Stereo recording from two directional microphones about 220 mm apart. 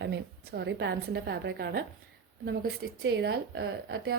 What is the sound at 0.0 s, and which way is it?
A woman's voice, 50° right (ahead or behind).